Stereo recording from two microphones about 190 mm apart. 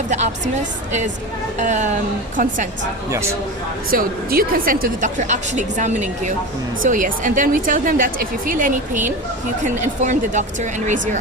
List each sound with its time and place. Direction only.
0.1 s a woman's voice: 40° right (ahead or behind)
1.5 s a woman's voice: 40° right (ahead or behind)
3.9 s a woman's voice: 50° right (ahead or behind)